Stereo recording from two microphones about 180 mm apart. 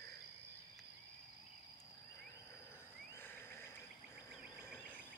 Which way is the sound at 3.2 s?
10° left (ahead or behind).